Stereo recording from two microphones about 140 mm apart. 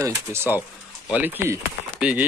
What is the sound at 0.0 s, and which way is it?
Speech, 15° right (ahead or behind).